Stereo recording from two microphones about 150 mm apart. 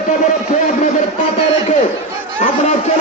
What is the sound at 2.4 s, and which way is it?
Speech, 60° left (ahead or behind).